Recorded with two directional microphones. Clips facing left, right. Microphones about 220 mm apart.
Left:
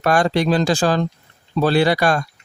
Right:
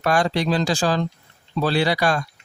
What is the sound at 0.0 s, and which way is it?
Speech, 50° left (ahead or behind).